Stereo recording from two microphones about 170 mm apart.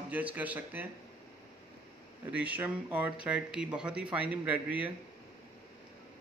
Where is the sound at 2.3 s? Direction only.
10° right (ahead or behind).